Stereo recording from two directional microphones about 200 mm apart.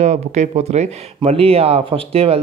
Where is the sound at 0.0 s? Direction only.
35° right (ahead or behind).